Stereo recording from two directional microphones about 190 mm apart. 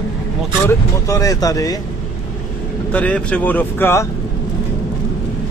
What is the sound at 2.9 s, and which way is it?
Speech, 5° left (ahead or behind).